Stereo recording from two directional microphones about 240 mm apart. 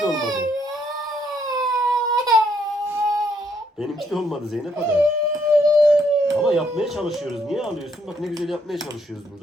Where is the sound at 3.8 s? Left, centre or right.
Centre.